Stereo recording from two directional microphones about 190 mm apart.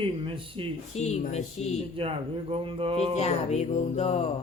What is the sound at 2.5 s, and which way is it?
Speech, 30° right (ahead or behind).